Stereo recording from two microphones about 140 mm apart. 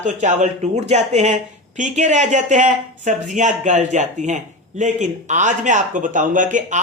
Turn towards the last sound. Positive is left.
turn(degrees=-65)  # may be behind; listen again after turning